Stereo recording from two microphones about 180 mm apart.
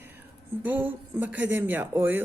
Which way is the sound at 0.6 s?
10° right (ahead or behind).